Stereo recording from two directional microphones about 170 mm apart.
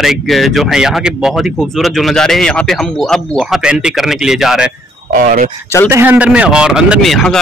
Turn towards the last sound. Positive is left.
turn(degrees=0)  # may be behind; listen again after turning